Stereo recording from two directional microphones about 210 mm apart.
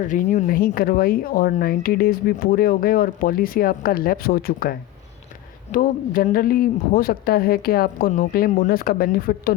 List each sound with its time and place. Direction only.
0.0 s speech: 35° left (ahead or behind)